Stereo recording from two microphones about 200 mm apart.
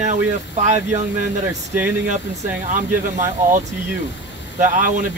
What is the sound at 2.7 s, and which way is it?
Speech, 40° right (ahead or behind).